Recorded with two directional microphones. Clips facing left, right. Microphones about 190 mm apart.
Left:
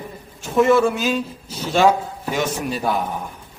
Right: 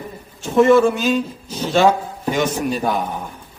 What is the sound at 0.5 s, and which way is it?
Speech, 5° left (ahead or behind).